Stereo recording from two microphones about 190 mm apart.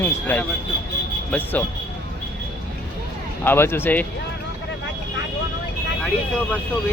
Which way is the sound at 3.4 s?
10° left (ahead or behind).